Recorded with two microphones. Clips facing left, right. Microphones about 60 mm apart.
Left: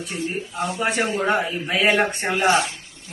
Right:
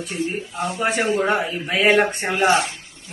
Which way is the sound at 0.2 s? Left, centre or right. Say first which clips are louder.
Right 2 dB; right.